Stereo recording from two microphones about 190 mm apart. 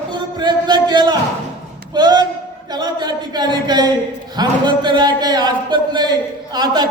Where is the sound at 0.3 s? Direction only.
25° right (ahead or behind).